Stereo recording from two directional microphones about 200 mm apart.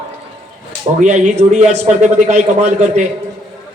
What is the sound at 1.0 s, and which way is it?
Speech, 35° right (ahead or behind).